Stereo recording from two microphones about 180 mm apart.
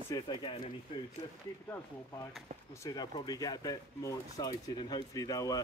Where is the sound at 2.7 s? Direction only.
20° left (ahead or behind).